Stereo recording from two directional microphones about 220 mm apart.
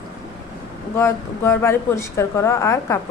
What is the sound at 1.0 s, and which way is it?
A woman's voice, 10° left (ahead or behind).